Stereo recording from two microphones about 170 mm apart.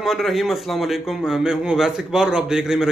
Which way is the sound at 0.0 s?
Centre (ahead or behind).